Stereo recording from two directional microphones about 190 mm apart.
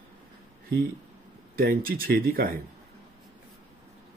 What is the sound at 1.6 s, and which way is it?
Speech, 50° right (ahead or behind).